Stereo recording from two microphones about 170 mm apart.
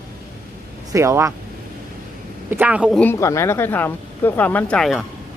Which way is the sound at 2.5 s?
10° right (ahead or behind).